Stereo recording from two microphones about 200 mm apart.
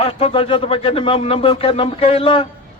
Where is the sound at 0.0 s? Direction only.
30° left (ahead or behind).